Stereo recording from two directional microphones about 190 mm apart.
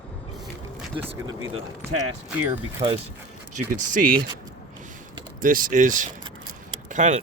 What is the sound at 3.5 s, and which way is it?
Speech, 45° right (ahead or behind).